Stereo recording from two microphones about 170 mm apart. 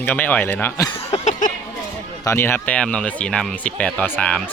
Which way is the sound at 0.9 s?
35° left (ahead or behind).